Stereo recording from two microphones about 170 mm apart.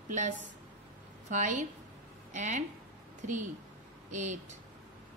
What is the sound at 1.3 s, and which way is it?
A woman's voice, 45° right (ahead or behind).